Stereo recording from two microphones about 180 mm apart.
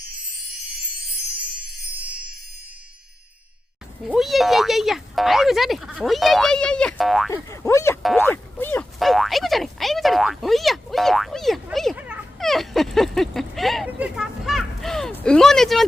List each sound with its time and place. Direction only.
2.0 s music: 5° right (ahead or behind)
4.0 s speech: centre (ahead or behind)
7.4 s speech: 15° left (ahead or behind)
9.0 s speech: centre (ahead or behind)